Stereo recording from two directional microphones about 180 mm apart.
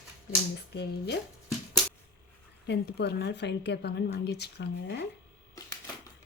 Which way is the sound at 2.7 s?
65° left (ahead or behind).